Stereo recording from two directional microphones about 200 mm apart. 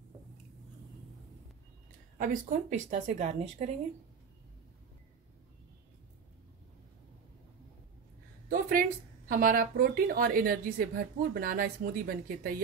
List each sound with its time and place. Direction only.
2.1 s speech: 40° right (ahead or behind)
8.5 s a sound: 45° right (ahead or behind)
9.3 s a woman's voice: 45° right (ahead or behind)